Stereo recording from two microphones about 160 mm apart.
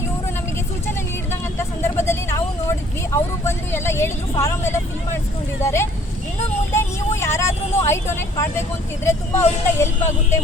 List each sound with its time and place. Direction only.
1.3 s vehicle: 15° left (ahead or behind)
5.6 s speech: 15° left (ahead or behind)
6.7 s vehicle: 15° left (ahead or behind)
9.0 s speech: 15° left (ahead or behind)